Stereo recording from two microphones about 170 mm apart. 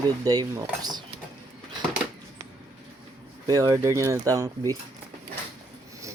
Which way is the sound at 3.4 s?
20° right (ahead or behind).